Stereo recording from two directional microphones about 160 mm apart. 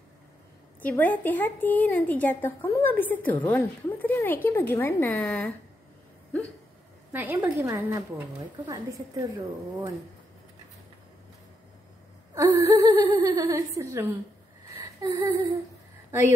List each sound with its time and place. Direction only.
0.8 s a woman's voice: 10° left (ahead or behind)
7.1 s a woman's voice: 10° right (ahead or behind)
8.6 s laughter: 20° right (ahead or behind)
12.4 s laughter: 20° right (ahead or behind)
13.3 s a woman's voice: 15° right (ahead or behind)
14.7 s a sound: 25° right (ahead or behind)